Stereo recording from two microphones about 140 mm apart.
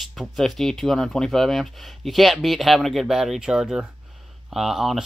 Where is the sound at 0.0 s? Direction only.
Centre (ahead or behind).